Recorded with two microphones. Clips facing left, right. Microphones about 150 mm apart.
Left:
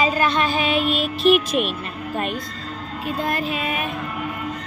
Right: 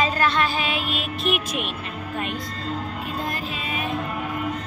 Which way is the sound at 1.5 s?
50° left (ahead or behind).